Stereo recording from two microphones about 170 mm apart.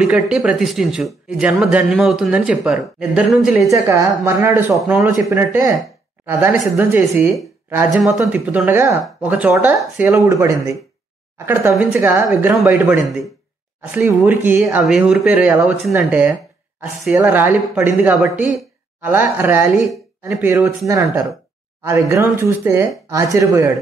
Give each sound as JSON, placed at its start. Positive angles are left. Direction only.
{"t": 0.0, "sound": "speech", "side_deg": -5}
{"t": 3.7, "sound": "speech", "side_deg": -20}
{"t": 7.9, "sound": "speech", "side_deg": 0}